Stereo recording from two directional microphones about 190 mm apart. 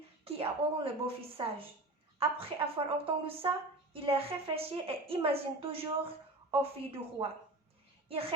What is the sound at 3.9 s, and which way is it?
A woman's voice, 30° right (ahead or behind).